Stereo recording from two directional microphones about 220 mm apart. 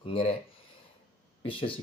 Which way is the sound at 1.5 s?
25° left (ahead or behind).